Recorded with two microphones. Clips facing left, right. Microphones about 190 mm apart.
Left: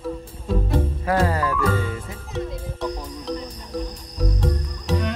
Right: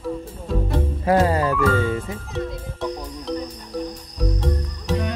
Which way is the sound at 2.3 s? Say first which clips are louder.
Left 4 dB; centre (ahead or behind).